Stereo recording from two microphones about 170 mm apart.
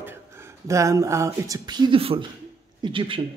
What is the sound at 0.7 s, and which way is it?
Speech, 20° right (ahead or behind).